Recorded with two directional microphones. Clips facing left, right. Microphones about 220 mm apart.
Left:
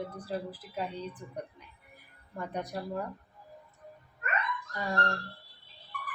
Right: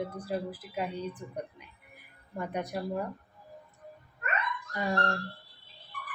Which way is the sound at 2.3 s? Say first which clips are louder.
Right 2 dB; 10° right (ahead or behind).